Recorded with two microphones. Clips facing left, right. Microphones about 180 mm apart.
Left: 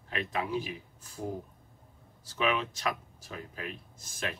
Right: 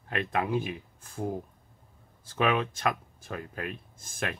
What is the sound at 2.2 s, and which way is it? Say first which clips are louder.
Speech: right 3 dB; 55° right (ahead or behind).